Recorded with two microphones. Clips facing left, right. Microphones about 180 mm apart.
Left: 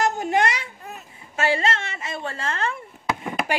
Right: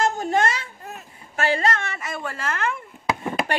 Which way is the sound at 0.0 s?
20° left (ahead or behind).